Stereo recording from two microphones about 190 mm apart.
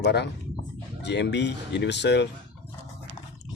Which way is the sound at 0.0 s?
60° left (ahead or behind).